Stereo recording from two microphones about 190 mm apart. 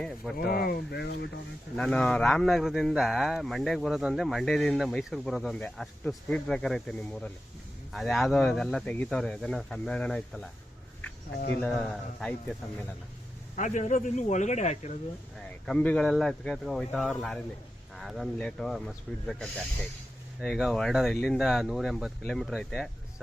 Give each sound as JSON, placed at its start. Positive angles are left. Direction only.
{"t": 0.3, "sound": "speech", "side_deg": 55}
{"t": 1.7, "sound": "speech", "side_deg": 5}
{"t": 11.6, "sound": "speech", "side_deg": 0}
{"t": 13.6, "sound": "speech", "side_deg": 40}
{"t": 15.6, "sound": "speech", "side_deg": 5}